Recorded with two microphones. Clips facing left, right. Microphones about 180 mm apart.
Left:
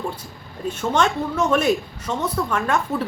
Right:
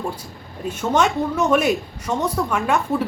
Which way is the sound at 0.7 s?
10° right (ahead or behind).